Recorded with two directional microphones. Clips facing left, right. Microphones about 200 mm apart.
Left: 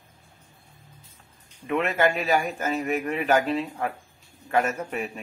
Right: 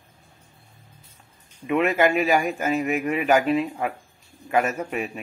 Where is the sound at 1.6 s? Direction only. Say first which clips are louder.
Right 3 dB; 10° right (ahead or behind).